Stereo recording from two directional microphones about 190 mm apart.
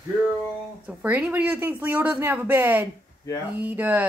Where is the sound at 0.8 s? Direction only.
5° right (ahead or behind).